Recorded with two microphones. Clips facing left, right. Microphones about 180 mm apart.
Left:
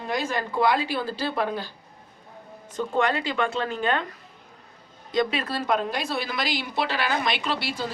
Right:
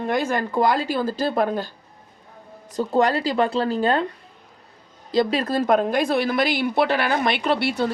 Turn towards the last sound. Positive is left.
turn(degrees=-60)  # may be behind; listen again after turning